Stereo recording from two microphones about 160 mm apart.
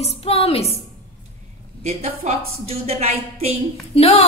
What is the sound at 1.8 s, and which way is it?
A woman's voice, 40° right (ahead or behind).